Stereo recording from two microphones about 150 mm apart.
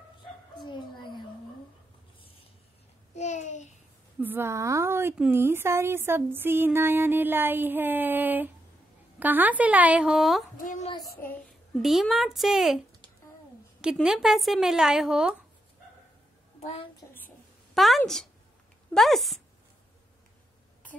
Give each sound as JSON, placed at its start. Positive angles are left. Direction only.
{"t": 0.6, "sound": "a sound", "side_deg": 30}
{"t": 3.2, "sound": "a sound", "side_deg": 50}
{"t": 4.2, "sound": "speech", "side_deg": -15}
{"t": 10.6, "sound": "a woman's voice", "side_deg": 60}
{"t": 11.8, "sound": "a woman's voice", "side_deg": 0}
{"t": 13.9, "sound": "a woman's voice", "side_deg": -5}
{"t": 16.5, "sound": "a child's voice", "side_deg": 40}
{"t": 17.7, "sound": "a woman's voice", "side_deg": 0}